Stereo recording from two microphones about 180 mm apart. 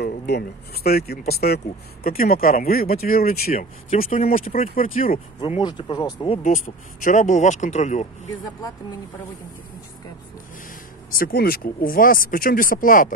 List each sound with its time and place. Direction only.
0.0 s speech: 60° left (ahead or behind)
3.9 s speech: 35° left (ahead or behind)
5.6 s speech: 25° left (ahead or behind)
6.2 s speech: 35° left (ahead or behind)
6.5 s speech: 50° left (ahead or behind)
11.1 s speech: 55° left (ahead or behind)